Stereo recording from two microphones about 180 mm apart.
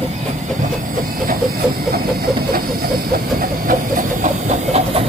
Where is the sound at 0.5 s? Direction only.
45° right (ahead or behind).